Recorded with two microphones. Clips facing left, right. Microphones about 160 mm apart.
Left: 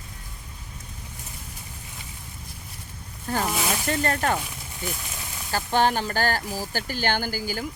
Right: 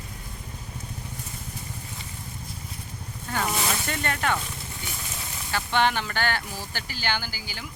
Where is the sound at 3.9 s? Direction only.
35° left (ahead or behind).